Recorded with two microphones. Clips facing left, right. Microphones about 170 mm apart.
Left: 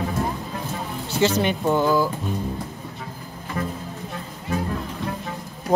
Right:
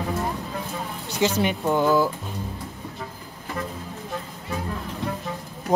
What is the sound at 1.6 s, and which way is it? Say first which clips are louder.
Speech: even; centre (ahead or behind).